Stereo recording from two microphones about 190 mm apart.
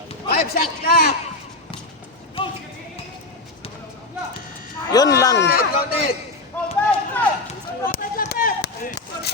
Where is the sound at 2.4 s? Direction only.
30° left (ahead or behind).